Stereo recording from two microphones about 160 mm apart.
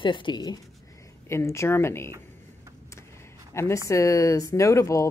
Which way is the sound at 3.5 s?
15° left (ahead or behind).